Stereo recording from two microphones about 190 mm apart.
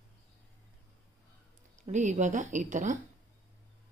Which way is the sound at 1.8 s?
40° right (ahead or behind).